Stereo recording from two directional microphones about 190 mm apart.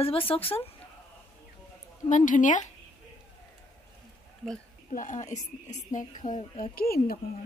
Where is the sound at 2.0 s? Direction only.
40° left (ahead or behind).